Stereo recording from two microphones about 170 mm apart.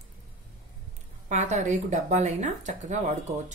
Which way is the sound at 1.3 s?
45° right (ahead or behind).